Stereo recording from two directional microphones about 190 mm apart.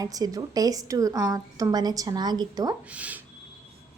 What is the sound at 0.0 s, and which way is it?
Speech, 20° right (ahead or behind).